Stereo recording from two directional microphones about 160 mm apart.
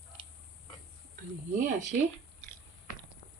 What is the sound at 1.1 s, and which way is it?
Speech, 55° right (ahead or behind).